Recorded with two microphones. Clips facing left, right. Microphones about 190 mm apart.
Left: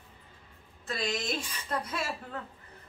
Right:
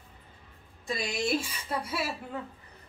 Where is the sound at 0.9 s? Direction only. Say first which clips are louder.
Right 3 dB; 10° right (ahead or behind).